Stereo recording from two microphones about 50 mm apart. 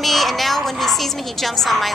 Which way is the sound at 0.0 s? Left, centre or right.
Centre.